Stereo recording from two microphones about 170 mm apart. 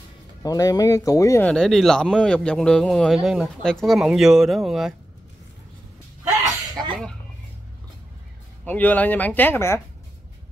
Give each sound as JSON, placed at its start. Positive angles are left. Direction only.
{"t": 0.4, "sound": "speech", "side_deg": 20}
{"t": 1.5, "sound": "speech", "side_deg": 5}
{"t": 6.7, "sound": "a sound", "side_deg": -25}
{"t": 8.6, "sound": "speech", "side_deg": 10}